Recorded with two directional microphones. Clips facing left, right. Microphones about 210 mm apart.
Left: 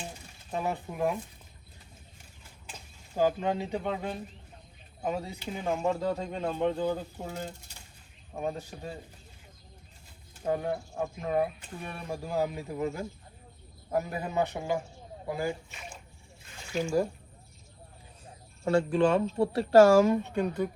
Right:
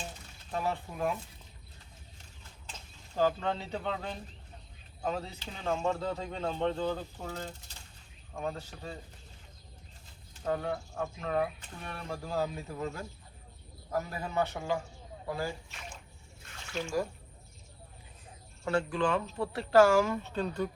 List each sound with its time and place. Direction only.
0.5 s speech: 15° left (ahead or behind)
2.6 s speech: 10° left (ahead or behind)
10.4 s speech: 15° left (ahead or behind)
18.6 s speech: 25° left (ahead or behind)